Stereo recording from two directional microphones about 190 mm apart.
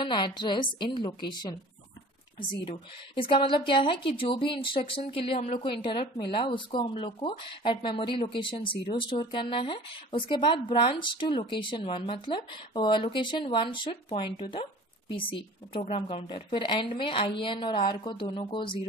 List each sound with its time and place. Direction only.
0.0 s a woman's voice: 25° left (ahead or behind)